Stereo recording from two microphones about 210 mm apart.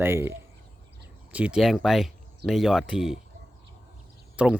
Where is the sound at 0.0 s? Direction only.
10° right (ahead or behind).